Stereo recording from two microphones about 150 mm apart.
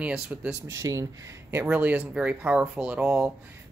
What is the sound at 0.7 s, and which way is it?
Speech, 20° right (ahead or behind).